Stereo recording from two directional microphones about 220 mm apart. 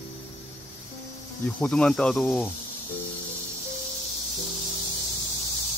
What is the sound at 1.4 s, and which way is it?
Speech, 5° left (ahead or behind).